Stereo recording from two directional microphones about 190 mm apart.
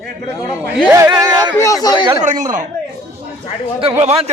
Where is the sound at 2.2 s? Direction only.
40° right (ahead or behind).